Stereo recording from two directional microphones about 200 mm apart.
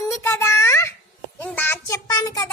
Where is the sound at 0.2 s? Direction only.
15° left (ahead or behind).